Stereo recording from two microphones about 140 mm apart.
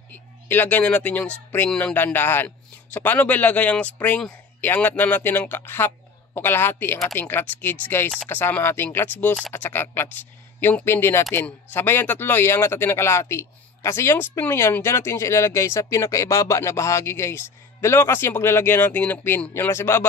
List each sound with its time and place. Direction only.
0.1 s speech: 15° left (ahead or behind)